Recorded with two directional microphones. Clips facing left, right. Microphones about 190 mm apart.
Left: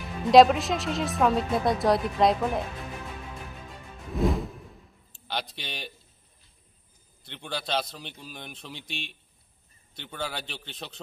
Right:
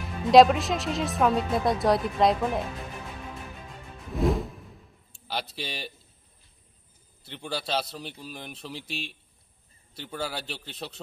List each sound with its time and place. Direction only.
0.0 s speech: centre (ahead or behind)
4.1 s music: centre (ahead or behind)
5.3 s speech: 5° right (ahead or behind)
7.2 s speech: 5° right (ahead or behind)